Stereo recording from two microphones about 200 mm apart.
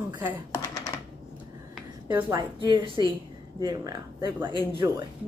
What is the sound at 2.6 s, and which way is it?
A woman's voice, 25° right (ahead or behind).